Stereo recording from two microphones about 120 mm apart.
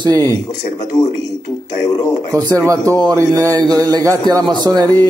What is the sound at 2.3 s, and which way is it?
Speech, 30° right (ahead or behind).